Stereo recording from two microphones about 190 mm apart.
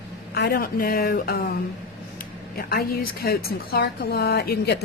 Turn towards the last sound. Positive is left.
turn(degrees=60)  # may be behind; listen again after turning